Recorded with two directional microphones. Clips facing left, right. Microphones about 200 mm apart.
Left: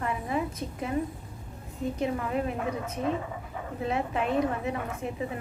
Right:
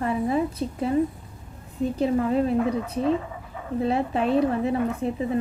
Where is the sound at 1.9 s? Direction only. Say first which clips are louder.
Right 8 dB; 35° right (ahead or behind).